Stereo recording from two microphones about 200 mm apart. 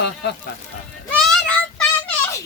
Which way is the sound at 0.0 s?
55° left (ahead or behind).